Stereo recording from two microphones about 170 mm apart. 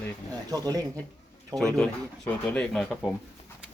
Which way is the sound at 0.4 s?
20° right (ahead or behind).